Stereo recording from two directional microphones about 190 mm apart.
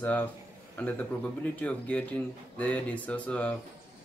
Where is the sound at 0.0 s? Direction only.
10° left (ahead or behind).